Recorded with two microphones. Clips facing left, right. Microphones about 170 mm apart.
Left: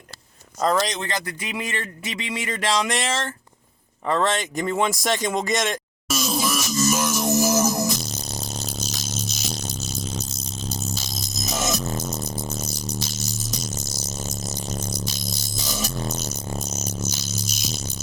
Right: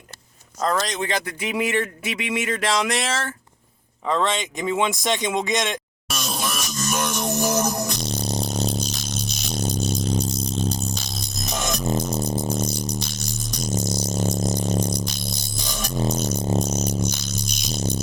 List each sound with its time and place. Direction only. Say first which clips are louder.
0.6 s a sound: left 2 dB; centre (ahead or behind)
1.0 s speech: right 4 dB; 15° right (ahead or behind)
2.5 s a sound: left 1 dB; centre (ahead or behind)
8.0 s music: right 7 dB; 30° right (ahead or behind)
9.9 s music: right 7 dB; 10° right (ahead or behind)
11.4 s music: left 1 dB; 5° left (ahead or behind)
11.8 s music: right 5 dB; 10° right (ahead or behind)
12.2 s rattle: right 6 dB; 30° right (ahead or behind)
13.0 s music: even; 5° left (ahead or behind)
14.0 s music: right 9 dB; 30° right (ahead or behind)
16.0 s music: right 6 dB; 30° right (ahead or behind)
17.0 s music: right 4 dB; 5° left (ahead or behind)
17.7 s music: right 7 dB; 30° right (ahead or behind)